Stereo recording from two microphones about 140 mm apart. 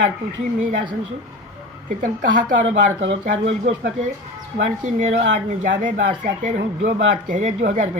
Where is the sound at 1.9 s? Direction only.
70° right (ahead or behind).